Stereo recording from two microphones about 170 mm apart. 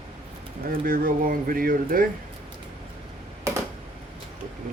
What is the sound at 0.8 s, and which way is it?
Speech, 55° right (ahead or behind).